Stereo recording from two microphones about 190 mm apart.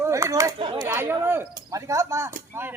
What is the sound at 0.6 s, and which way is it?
Chatter, 25° right (ahead or behind).